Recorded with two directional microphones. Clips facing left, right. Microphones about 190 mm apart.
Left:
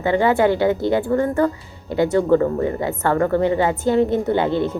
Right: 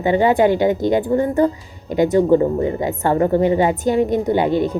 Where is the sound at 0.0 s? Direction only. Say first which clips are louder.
Right 2 dB; 15° right (ahead or behind).